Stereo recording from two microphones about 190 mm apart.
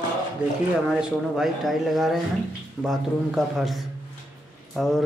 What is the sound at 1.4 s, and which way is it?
Speech, centre (ahead or behind).